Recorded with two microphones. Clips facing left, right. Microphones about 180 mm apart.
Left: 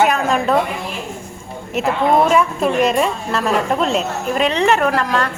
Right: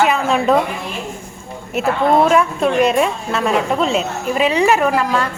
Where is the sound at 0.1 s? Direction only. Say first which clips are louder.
Right 1 dB; centre (ahead or behind).